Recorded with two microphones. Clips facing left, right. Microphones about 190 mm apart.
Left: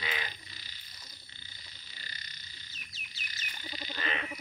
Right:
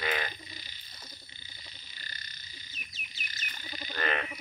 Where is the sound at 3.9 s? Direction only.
55° right (ahead or behind).